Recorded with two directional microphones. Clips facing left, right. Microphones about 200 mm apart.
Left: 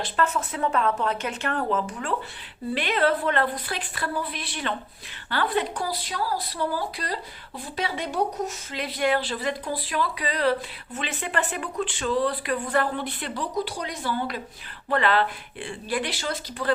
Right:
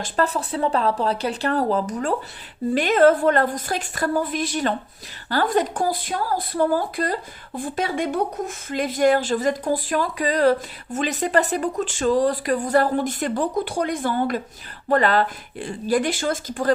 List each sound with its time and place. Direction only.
0.0 s a woman's voice: 35° right (ahead or behind)